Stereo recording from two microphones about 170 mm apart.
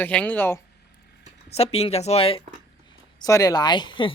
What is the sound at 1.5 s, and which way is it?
Speech, 35° left (ahead or behind).